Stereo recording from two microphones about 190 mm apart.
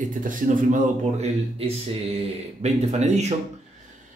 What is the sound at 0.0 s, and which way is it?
A man's voice, 45° right (ahead or behind).